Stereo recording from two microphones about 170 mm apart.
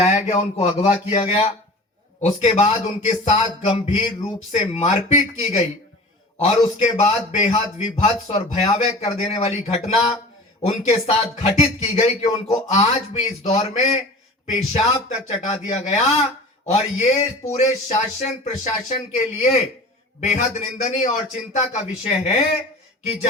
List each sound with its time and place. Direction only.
0.0 s a man's voice: 40° left (ahead or behind)